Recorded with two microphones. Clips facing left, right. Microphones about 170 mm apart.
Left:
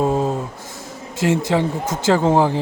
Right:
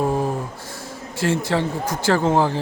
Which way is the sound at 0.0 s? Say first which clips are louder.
Left 3 dB; 20° left (ahead or behind).